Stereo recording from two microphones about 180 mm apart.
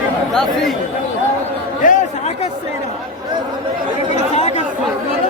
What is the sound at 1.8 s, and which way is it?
Chatter, 40° left (ahead or behind).